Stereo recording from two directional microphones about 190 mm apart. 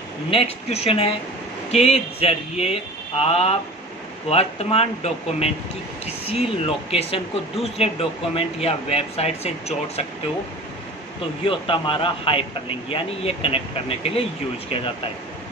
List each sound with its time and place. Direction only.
0.3 s a man's voice: 30° left (ahead or behind)
11.4 s a man's voice: 30° left (ahead or behind)